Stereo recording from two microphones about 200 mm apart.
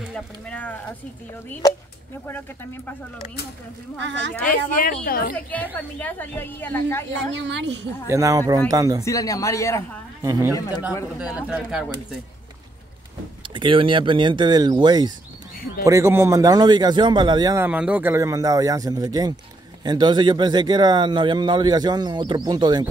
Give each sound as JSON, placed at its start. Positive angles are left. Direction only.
{"t": 0.1, "sound": "a woman's voice", "side_deg": 5}
{"t": 4.5, "sound": "speech", "side_deg": 45}
{"t": 5.5, "sound": "a woman's voice", "side_deg": 5}
{"t": 7.1, "sound": "speech", "side_deg": -65}
{"t": 8.1, "sound": "a man's voice", "side_deg": -15}
{"t": 9.0, "sound": "a woman's voice", "side_deg": 15}
{"t": 10.2, "sound": "a man's voice", "side_deg": -15}
{"t": 11.1, "sound": "speech", "side_deg": -5}
{"t": 13.4, "sound": "a man's voice", "side_deg": -25}